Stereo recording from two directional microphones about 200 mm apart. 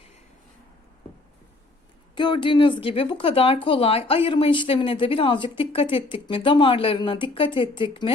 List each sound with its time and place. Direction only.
2.1 s a woman's voice: 25° left (ahead or behind)